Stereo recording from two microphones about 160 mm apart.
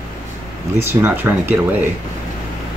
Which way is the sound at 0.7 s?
15° right (ahead or behind).